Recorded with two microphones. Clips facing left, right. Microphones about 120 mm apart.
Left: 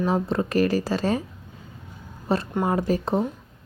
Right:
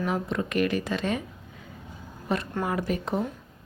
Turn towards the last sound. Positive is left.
turn(degrees=35)  # may be behind; listen again after turning